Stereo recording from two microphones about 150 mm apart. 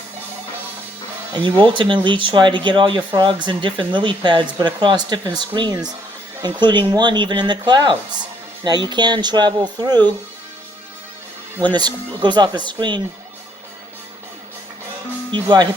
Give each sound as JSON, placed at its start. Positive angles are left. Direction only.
{"t": 1.7, "sound": "speech", "side_deg": -35}
{"t": 11.6, "sound": "speech", "side_deg": -30}
{"t": 15.3, "sound": "speech", "side_deg": -30}